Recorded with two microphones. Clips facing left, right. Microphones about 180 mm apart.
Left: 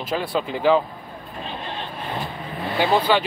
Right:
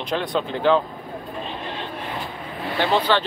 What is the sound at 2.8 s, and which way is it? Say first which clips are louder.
Speech: left 1 dB; 10° left (ahead or behind).